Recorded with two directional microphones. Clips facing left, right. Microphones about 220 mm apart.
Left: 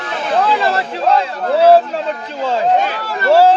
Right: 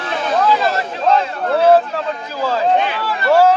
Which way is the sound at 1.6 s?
30° left (ahead or behind).